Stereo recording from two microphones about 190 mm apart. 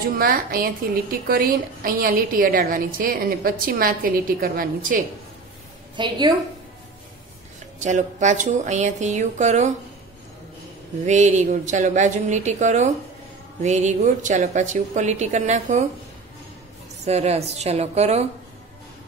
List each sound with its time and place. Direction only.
0.2 s a woman's voice: 50° right (ahead or behind)
5.9 s a woman's voice: 25° right (ahead or behind)
7.8 s a woman's voice: 40° right (ahead or behind)
11.1 s a woman's voice: 40° right (ahead or behind)
17.0 s a woman's voice: 35° right (ahead or behind)